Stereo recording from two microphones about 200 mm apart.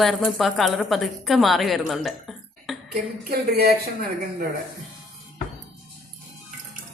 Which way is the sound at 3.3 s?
50° right (ahead or behind).